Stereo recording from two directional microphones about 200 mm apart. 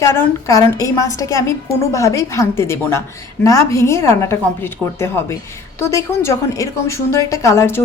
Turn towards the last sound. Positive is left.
turn(degrees=10)  # may be behind; listen again after turning